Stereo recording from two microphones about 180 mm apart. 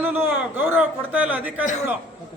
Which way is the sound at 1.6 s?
45° left (ahead or behind).